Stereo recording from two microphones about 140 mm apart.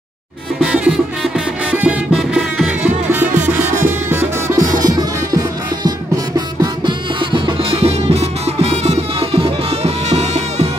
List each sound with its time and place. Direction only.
0.6 s music: 5° right (ahead or behind); by 10.7 s 50° right (ahead or behind)